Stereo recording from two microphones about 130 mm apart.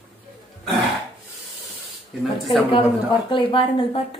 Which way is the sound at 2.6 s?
40° left (ahead or behind).